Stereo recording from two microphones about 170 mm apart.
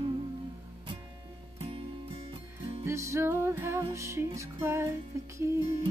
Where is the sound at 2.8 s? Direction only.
15° right (ahead or behind).